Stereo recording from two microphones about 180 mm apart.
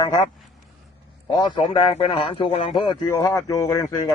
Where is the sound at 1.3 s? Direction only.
25° left (ahead or behind).